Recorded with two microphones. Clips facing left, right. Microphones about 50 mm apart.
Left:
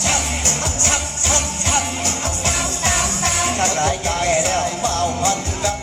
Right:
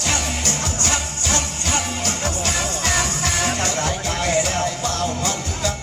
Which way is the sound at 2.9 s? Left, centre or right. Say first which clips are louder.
Left 2 dB; left.